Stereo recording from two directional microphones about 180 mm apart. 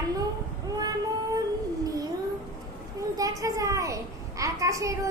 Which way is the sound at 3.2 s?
20° right (ahead or behind).